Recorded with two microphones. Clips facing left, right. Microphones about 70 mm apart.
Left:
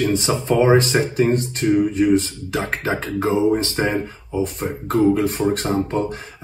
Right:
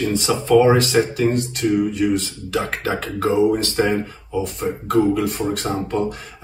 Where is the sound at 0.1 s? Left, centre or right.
Left.